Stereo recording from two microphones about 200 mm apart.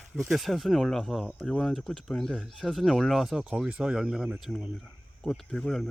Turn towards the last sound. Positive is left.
turn(degrees=0)  # may be behind; listen again after turning